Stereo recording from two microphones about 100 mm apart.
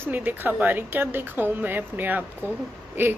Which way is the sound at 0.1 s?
20° right (ahead or behind).